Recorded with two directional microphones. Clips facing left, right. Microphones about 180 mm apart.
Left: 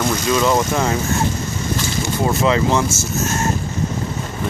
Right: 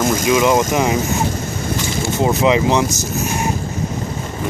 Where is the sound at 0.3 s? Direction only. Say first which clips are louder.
Right 2 dB; 20° right (ahead or behind).